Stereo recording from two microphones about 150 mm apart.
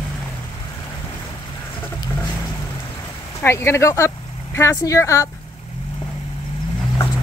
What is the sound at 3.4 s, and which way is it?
Speech, 15° left (ahead or behind).